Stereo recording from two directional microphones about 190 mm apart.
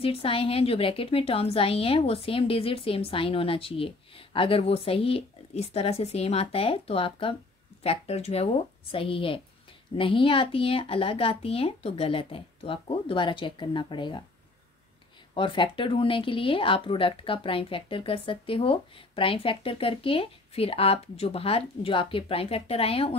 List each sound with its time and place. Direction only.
0.0 s speech: 30° left (ahead or behind)
15.3 s speech: 25° left (ahead or behind)